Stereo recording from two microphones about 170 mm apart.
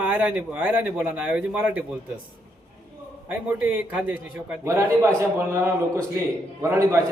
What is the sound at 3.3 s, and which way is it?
A man's voice, 10° right (ahead or behind).